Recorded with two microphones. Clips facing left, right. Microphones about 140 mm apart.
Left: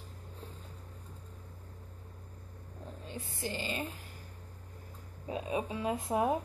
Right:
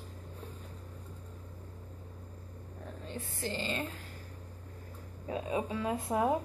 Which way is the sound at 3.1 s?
15° left (ahead or behind).